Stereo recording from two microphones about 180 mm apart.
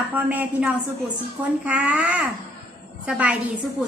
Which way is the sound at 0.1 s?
10° right (ahead or behind).